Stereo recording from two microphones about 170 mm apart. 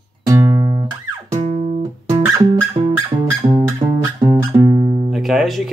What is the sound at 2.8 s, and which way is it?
Music, 35° right (ahead or behind).